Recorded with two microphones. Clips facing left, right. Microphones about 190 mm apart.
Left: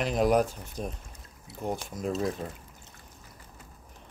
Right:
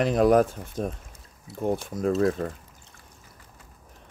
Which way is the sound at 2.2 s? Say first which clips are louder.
Right 7 dB; 60° right (ahead or behind).